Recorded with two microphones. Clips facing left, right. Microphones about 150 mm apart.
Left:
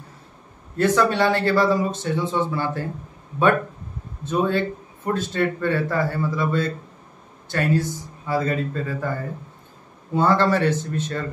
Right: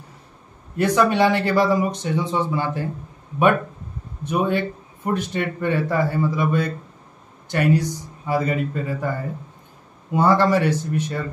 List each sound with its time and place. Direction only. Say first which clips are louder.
0.7 s a man's voice: right 1 dB; 15° right (ahead or behind)
4.2 s a man's voice: even; 15° right (ahead or behind)
10.1 s a man's voice: right 2 dB; 10° right (ahead or behind)